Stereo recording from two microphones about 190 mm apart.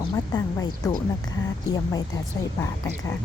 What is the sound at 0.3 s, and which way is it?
Speech, 20° left (ahead or behind).